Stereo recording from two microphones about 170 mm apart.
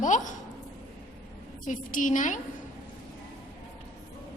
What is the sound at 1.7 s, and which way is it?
Speech, 50° left (ahead or behind).